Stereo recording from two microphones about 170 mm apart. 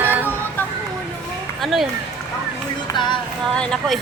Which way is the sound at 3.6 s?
Centre (ahead or behind).